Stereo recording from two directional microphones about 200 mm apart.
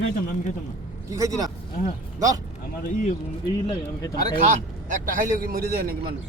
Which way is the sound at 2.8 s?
40° left (ahead or behind).